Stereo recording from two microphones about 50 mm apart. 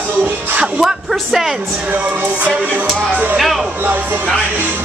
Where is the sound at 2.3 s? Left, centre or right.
Right.